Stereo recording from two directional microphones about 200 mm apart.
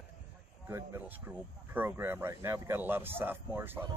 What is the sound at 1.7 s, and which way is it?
Speech, 10° right (ahead or behind).